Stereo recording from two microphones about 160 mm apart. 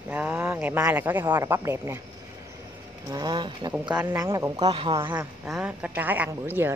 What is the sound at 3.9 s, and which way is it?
Speech, 15° right (ahead or behind).